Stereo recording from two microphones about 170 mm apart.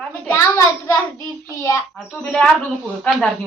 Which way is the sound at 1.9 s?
5° left (ahead or behind).